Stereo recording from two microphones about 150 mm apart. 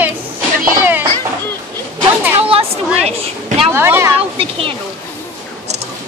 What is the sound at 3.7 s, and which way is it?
Speech, 15° right (ahead or behind).